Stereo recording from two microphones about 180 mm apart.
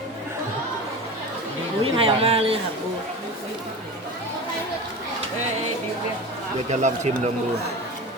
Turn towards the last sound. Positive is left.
turn(degrees=-40)  # may be behind; listen again after turning